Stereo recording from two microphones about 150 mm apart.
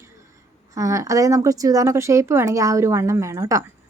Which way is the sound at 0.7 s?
20° right (ahead or behind).